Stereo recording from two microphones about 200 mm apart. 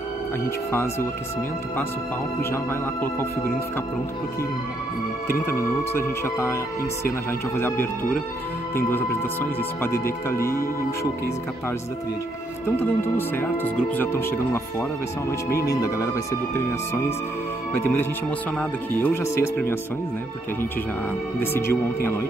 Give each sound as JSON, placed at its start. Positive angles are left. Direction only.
{"t": 2.5, "sound": "speech", "side_deg": 10}
{"t": 5.5, "sound": "speech", "side_deg": 15}
{"t": 12.6, "sound": "speech", "side_deg": 10}
{"t": 17.7, "sound": "speech", "side_deg": 10}
{"t": 21.4, "sound": "speech", "side_deg": 10}